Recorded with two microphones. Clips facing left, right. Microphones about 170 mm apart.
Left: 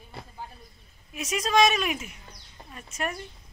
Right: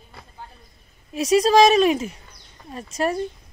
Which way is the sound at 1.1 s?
35° right (ahead or behind).